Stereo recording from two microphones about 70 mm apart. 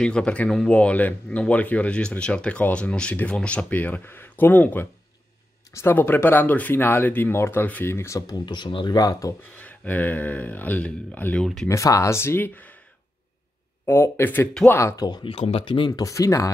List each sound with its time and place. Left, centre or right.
0.0 s speech: centre
5.7 s speech: left
8.3 s speech: left
9.6 s speech: left
11.7 s speech: left
13.8 s speech: left
15.0 s speech: left
16.0 s speech: left